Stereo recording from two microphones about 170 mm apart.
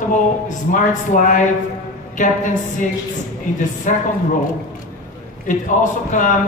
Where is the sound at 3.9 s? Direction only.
50° left (ahead or behind).